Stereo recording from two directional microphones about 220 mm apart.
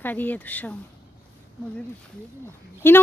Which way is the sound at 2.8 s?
10° left (ahead or behind).